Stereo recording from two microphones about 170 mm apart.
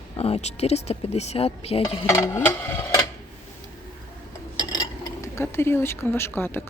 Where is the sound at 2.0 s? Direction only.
15° left (ahead or behind).